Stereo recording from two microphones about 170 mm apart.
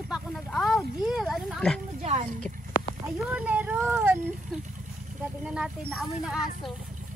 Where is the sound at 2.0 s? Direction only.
40° right (ahead or behind).